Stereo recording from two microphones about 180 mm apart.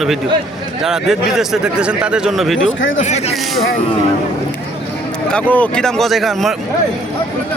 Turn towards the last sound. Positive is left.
turn(degrees=0)  # may be behind; listen again after turning